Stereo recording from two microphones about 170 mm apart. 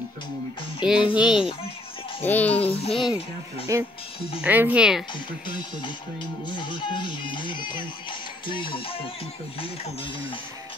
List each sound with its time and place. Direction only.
0.8 s speech: 5° right (ahead or behind)
2.2 s a child's voice: 10° left (ahead or behind)
2.6 s music: 35° left (ahead or behind)
3.7 s speech: 20° right (ahead or behind)
5.1 s speech: 25° left (ahead or behind)
9.6 s music: 30° left (ahead or behind)